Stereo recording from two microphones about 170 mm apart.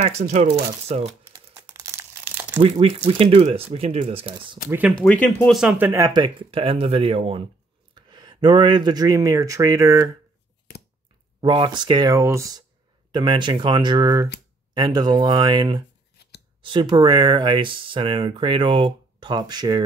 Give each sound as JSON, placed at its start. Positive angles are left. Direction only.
{"t": 0.0, "sound": "speech", "side_deg": -40}
{"t": 1.3, "sound": "crumpling", "side_deg": -20}
{"t": 2.6, "sound": "speech", "side_deg": -35}
{"t": 4.6, "sound": "speech", "side_deg": -10}
{"t": 4.9, "sound": "speech", "side_deg": 5}
{"t": 6.2, "sound": "speech", "side_deg": -35}
{"t": 11.4, "sound": "speech", "side_deg": -30}